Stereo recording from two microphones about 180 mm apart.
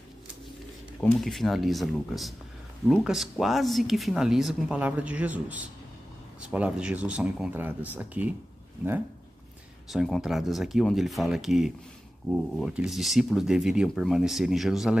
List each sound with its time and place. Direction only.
1.2 s speech: centre (ahead or behind)
9.8 s speech: centre (ahead or behind)